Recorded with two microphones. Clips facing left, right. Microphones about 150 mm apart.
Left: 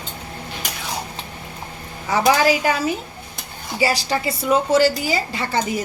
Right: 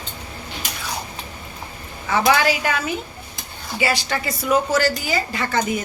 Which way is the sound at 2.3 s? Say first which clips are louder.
Left 3 dB; 35° left (ahead or behind).